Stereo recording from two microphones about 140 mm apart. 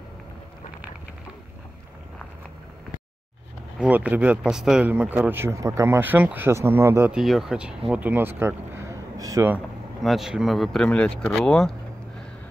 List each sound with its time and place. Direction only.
3.8 s speech: 10° right (ahead or behind)
7.1 s speech: 5° right (ahead or behind); by 9.6 s 20° right (ahead or behind)
10.0 s speech: 5° right (ahead or behind)